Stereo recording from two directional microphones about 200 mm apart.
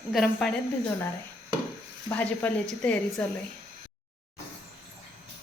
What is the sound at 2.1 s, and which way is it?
Speech, 10° left (ahead or behind).